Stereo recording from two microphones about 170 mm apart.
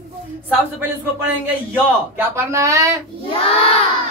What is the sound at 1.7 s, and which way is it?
A woman's voice, 10° right (ahead or behind).